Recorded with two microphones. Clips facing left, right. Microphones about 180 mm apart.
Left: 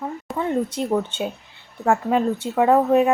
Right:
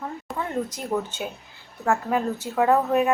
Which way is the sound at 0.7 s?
30° left (ahead or behind).